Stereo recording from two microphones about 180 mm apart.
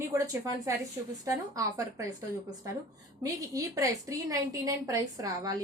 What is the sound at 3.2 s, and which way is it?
A woman's voice, 20° right (ahead or behind).